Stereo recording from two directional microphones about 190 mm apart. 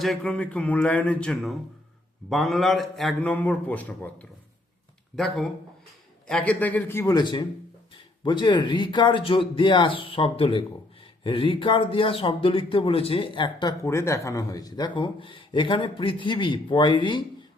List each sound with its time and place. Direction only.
0.0 s a man's voice: 5° left (ahead or behind); by 13.7 s 25° left (ahead or behind)
13.8 s speech: 15° left (ahead or behind)